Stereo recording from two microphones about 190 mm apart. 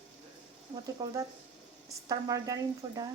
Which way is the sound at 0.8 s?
20° right (ahead or behind).